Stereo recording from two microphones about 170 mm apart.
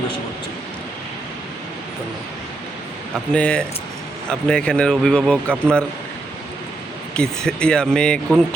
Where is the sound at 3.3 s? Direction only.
5° left (ahead or behind).